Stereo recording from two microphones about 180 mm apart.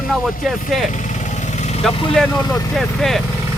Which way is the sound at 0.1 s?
Centre (ahead or behind).